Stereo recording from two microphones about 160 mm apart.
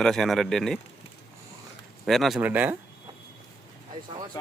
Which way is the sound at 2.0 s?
Centre (ahead or behind).